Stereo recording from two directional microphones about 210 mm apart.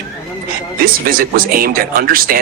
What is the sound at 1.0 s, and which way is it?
Speech, 45° right (ahead or behind).